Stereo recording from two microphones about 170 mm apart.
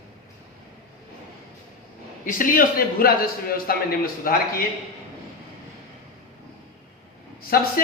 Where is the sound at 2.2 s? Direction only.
55° left (ahead or behind).